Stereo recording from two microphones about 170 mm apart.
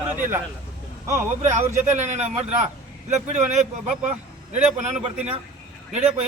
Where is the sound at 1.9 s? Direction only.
40° right (ahead or behind).